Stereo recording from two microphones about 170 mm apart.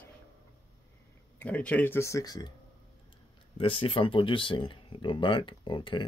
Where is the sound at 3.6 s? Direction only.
30° left (ahead or behind).